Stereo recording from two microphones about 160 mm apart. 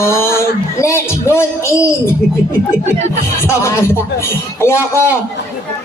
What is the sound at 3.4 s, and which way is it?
Speech, 20° left (ahead or behind).